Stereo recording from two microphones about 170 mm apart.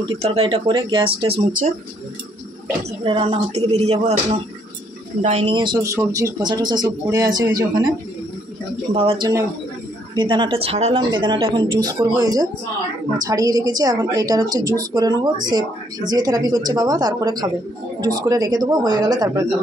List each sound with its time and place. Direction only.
0.2 s speech: 35° right (ahead or behind)
3.0 s a woman's voice: 30° right (ahead or behind)
8.9 s a woman's voice: 35° right (ahead or behind)